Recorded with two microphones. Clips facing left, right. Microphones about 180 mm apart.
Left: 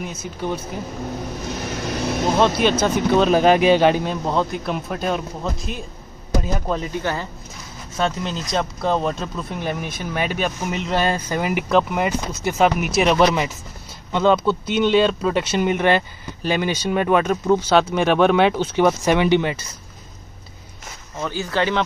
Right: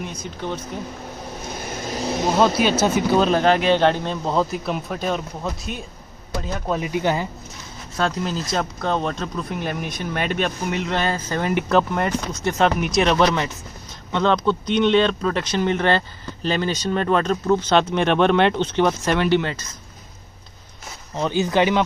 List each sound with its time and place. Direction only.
0.0 s speech: 5° left (ahead or behind)
2.4 s speech: 5° right (ahead or behind)
3.3 s speech: 15° left (ahead or behind)
6.7 s speech: 15° right (ahead or behind)
7.9 s speech: centre (ahead or behind)
21.2 s speech: 20° right (ahead or behind)